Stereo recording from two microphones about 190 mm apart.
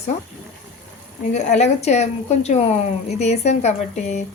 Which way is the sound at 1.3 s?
35° left (ahead or behind).